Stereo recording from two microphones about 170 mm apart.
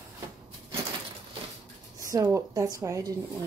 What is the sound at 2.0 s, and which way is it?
Speech, 20° right (ahead or behind).